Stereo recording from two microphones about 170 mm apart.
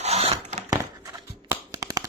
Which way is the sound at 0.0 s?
35° right (ahead or behind).